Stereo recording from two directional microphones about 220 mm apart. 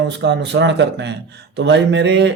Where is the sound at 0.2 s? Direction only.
55° right (ahead or behind).